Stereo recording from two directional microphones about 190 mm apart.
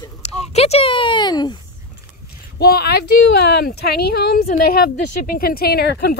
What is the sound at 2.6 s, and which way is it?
Speech, 55° left (ahead or behind).